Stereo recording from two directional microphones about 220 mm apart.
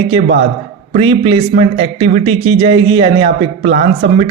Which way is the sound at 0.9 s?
20° right (ahead or behind).